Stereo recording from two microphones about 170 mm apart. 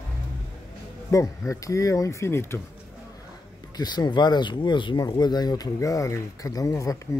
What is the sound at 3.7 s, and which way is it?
Speech, 25° left (ahead or behind).